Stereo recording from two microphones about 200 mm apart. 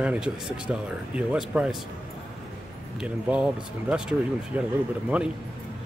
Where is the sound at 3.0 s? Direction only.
5° right (ahead or behind).